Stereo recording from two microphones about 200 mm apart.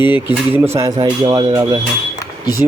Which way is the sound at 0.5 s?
10° right (ahead or behind).